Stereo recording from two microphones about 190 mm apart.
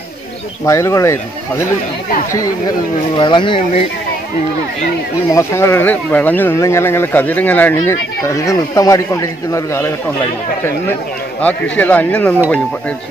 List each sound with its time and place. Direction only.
0.7 s speech: 15° left (ahead or behind)
3.2 s speech: 25° left (ahead or behind)
5.3 s speech: 15° left (ahead or behind)
11.4 s speech: 5° left (ahead or behind)